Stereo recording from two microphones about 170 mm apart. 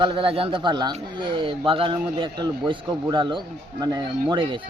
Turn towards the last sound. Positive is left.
turn(degrees=-30)  # may be behind; listen again after turning